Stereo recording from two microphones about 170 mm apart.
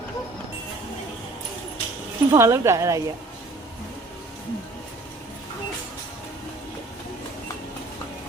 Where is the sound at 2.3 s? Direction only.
15° right (ahead or behind).